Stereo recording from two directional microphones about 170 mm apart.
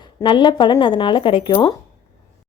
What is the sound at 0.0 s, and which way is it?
Speech, 30° left (ahead or behind).